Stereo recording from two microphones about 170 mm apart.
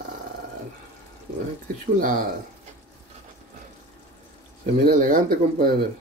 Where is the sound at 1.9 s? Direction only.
55° right (ahead or behind).